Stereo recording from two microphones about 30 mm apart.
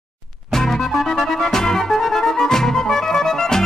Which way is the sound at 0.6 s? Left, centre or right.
Centre.